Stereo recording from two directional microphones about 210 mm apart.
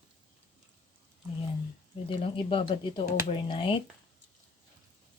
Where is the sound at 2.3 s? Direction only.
25° left (ahead or behind).